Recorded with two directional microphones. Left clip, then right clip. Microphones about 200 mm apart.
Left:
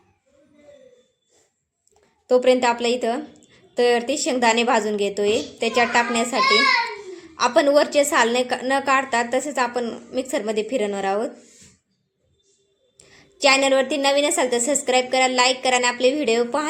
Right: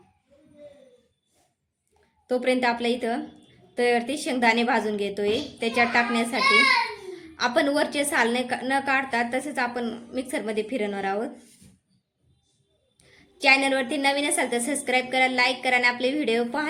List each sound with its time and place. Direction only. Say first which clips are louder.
2.2 s a woman's voice: left 7 dB; centre (ahead or behind)
13.1 s a woman's voice: left 2 dB; centre (ahead or behind)